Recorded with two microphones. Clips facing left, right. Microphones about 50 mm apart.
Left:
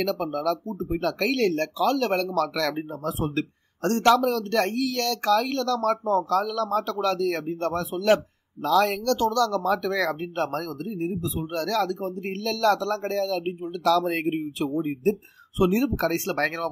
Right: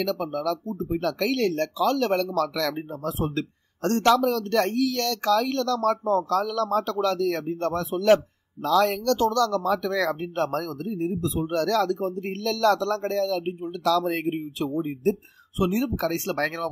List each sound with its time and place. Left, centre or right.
0.5 s speech: left
7.9 s speech: centre
8.6 s speech: left
14.0 s speech: centre